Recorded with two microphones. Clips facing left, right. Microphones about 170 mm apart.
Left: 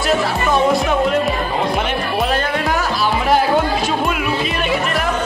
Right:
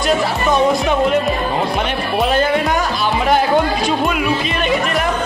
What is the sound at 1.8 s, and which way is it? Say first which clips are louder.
Music: right 1 dB; 5° left (ahead or behind).